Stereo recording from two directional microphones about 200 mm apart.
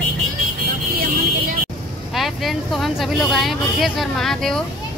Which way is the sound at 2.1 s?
Centre (ahead or behind).